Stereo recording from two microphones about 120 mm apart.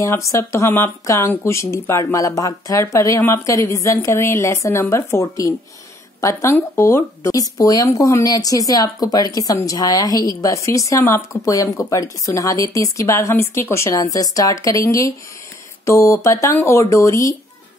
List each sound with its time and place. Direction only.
0.0 s speech: 25° left (ahead or behind)